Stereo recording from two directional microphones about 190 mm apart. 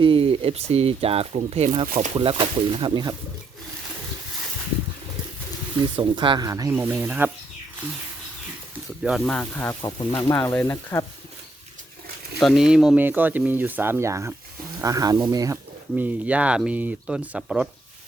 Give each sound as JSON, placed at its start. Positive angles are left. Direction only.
{"t": 0.0, "sound": "speech", "side_deg": -30}
{"t": 6.0, "sound": "speech", "side_deg": -25}
{"t": 9.0, "sound": "speech", "side_deg": 5}
{"t": 12.4, "sound": "speech", "side_deg": 0}
{"t": 16.0, "sound": "speech", "side_deg": -10}